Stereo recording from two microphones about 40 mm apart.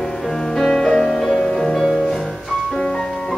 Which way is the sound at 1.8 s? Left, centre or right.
Centre.